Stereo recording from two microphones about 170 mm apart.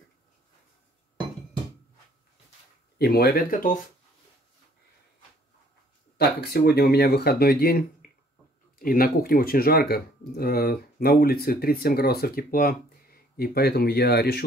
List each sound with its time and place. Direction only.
3.0 s speech: 65° left (ahead or behind)
6.1 s speech: 70° left (ahead or behind)